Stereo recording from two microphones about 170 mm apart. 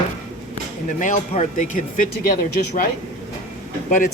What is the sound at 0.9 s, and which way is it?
Speech, 45° left (ahead or behind).